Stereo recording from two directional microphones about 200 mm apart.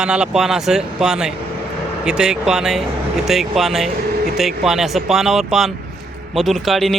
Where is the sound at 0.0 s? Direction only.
5° right (ahead or behind).